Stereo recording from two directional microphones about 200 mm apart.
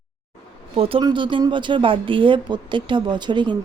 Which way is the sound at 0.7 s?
30° right (ahead or behind).